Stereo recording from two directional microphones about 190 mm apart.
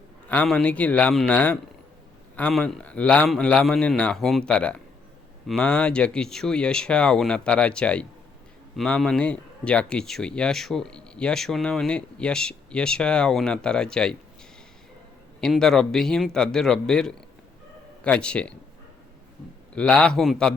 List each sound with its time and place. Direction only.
0.3 s speech: 5° left (ahead or behind)
15.4 s speech: 5° left (ahead or behind)
19.7 s speech: 5° left (ahead or behind)